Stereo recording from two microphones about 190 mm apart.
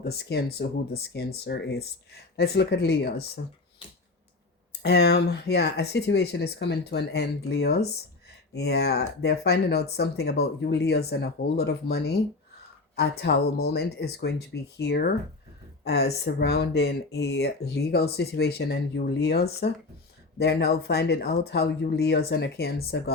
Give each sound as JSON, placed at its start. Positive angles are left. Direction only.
{"t": 0.0, "sound": "speech", "side_deg": 55}
{"t": 4.8, "sound": "speech", "side_deg": 60}